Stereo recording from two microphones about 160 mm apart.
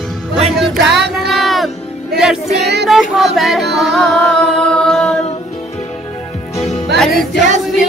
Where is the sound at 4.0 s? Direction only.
5° left (ahead or behind).